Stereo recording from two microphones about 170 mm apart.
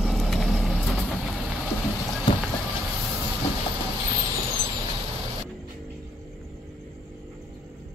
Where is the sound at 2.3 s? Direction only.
25° left (ahead or behind).